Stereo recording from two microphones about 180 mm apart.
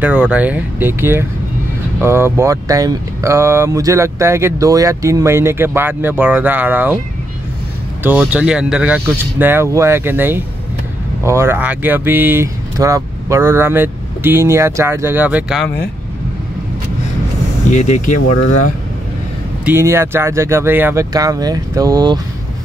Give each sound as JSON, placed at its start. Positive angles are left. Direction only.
{"t": 0.0, "sound": "speech", "side_deg": -5}
{"t": 8.0, "sound": "speech", "side_deg": -10}
{"t": 17.6, "sound": "speech", "side_deg": 40}
{"t": 19.6, "sound": "speech", "side_deg": -15}